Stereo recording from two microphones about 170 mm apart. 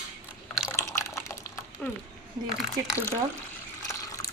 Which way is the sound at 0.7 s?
15° left (ahead or behind).